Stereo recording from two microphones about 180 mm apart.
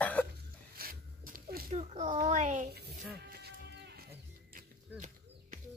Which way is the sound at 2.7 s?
65° right (ahead or behind).